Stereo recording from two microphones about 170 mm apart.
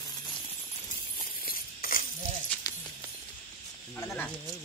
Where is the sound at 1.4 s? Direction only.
55° left (ahead or behind).